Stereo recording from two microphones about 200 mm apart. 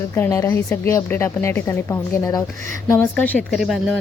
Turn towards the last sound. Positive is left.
turn(degrees=0)  # may be behind; listen again after turning